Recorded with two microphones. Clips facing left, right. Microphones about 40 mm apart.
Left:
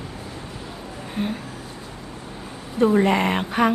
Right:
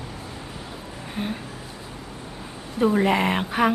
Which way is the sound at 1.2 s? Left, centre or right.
Centre.